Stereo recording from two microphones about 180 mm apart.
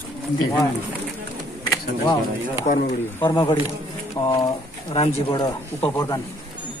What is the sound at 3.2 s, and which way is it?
Speech, 25° left (ahead or behind).